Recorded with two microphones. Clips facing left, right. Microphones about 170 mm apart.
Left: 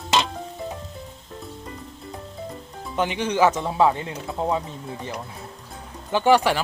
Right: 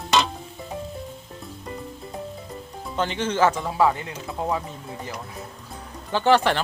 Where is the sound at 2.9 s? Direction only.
15° left (ahead or behind).